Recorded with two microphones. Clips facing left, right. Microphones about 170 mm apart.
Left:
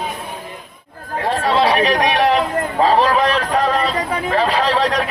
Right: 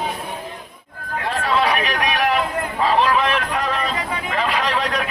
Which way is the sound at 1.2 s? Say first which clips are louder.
Left 4 dB; 35° left (ahead or behind).